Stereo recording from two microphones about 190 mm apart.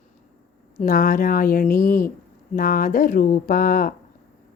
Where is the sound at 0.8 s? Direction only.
45° left (ahead or behind).